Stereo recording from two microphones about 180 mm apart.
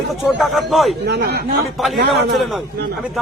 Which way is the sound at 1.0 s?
70° right (ahead or behind).